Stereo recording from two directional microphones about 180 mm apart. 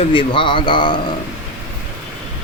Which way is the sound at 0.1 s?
30° left (ahead or behind).